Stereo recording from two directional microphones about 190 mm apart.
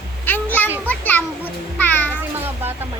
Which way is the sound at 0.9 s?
10° left (ahead or behind).